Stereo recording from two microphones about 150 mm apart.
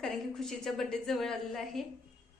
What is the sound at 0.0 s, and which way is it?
A woman's voice, 5° left (ahead or behind).